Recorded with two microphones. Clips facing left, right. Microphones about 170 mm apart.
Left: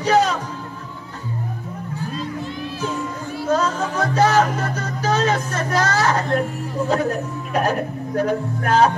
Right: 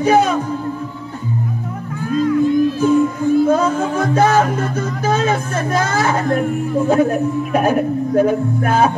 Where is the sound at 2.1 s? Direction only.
45° right (ahead or behind).